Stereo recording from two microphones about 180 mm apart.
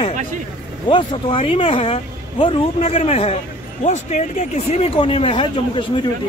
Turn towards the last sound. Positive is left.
turn(degrees=25)  # may be behind; listen again after turning